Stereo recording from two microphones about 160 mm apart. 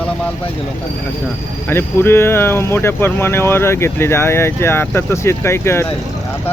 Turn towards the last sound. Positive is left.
turn(degrees=15)  # may be behind; listen again after turning